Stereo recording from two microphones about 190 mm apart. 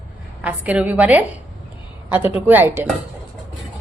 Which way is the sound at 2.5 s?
10° right (ahead or behind).